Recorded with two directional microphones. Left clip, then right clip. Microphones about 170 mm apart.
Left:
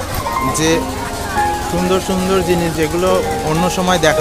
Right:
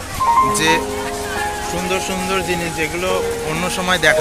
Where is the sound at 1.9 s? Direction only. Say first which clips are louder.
Left 4 dB; 25° left (ahead or behind).